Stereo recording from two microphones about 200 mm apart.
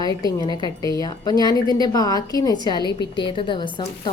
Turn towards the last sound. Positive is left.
turn(degrees=25)  # may be behind; listen again after turning